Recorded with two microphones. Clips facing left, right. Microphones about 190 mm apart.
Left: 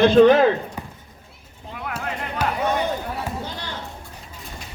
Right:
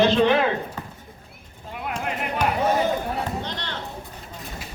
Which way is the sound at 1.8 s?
20° right (ahead or behind).